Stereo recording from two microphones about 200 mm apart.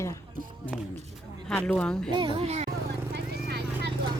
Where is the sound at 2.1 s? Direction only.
25° right (ahead or behind).